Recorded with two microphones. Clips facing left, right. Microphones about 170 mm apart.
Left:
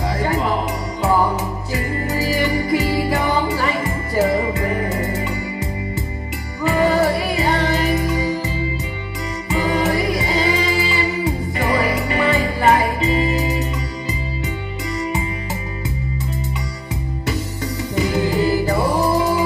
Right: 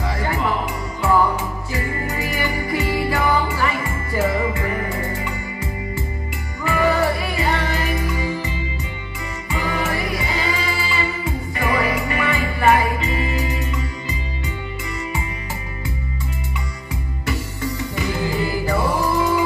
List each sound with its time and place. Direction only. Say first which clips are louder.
0.0 s music: left 3 dB; 40° left (ahead or behind)
6.7 s music: left 2 dB; 40° left (ahead or behind)
9.8 s music: left 5 dB; 35° left (ahead or behind)
13.4 s music: left 4 dB; 20° left (ahead or behind)
17.3 s music: even; 40° left (ahead or behind)